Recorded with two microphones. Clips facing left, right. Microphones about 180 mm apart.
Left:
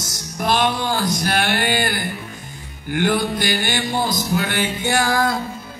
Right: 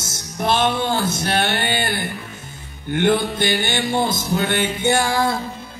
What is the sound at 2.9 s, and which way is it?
Speech, 25° right (ahead or behind).